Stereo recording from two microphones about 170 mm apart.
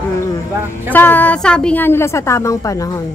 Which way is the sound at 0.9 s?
10° left (ahead or behind).